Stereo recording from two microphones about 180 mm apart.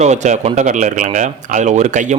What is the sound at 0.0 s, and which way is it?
Speech, 40° right (ahead or behind).